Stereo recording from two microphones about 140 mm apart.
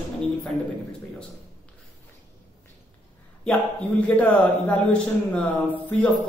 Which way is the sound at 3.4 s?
10° left (ahead or behind).